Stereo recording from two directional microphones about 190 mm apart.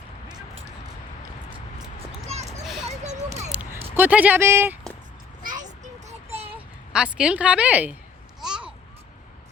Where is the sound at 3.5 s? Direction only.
10° right (ahead or behind).